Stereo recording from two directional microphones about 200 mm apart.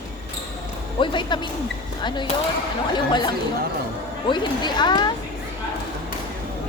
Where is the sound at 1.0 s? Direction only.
25° left (ahead or behind).